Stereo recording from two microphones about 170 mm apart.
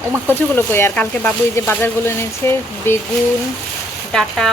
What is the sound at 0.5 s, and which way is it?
Speech, 15° left (ahead or behind).